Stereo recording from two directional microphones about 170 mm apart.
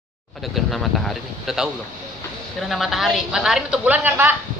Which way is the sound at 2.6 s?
Centre (ahead or behind).